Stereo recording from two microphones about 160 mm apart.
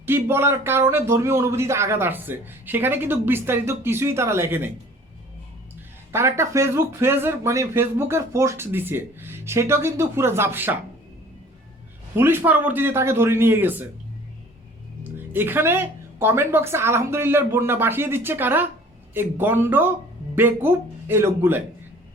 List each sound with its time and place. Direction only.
0.0 s a man's voice: 15° right (ahead or behind)
6.1 s a man's voice: 15° right (ahead or behind)
12.1 s a man's voice: 15° right (ahead or behind)
15.1 s a man's voice: 15° right (ahead or behind)